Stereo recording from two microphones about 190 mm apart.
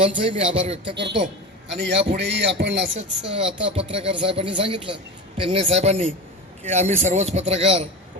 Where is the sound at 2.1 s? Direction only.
65° right (ahead or behind).